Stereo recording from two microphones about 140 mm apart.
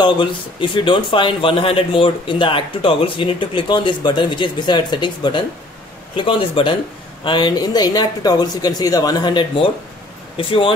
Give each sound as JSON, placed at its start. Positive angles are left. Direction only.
{"t": 0.0, "sound": "speech", "side_deg": 35}